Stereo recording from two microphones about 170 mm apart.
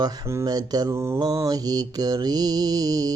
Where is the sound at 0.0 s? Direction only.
20° right (ahead or behind).